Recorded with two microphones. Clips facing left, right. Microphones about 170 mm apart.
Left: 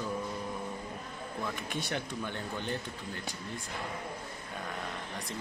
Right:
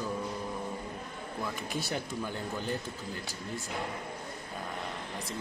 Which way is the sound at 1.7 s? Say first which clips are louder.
Right 2 dB; 5° right (ahead or behind).